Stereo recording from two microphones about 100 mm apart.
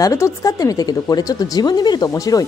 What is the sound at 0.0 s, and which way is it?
Speech, 35° left (ahead or behind).